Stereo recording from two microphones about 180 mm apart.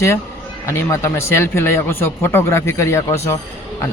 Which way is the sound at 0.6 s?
15° left (ahead or behind).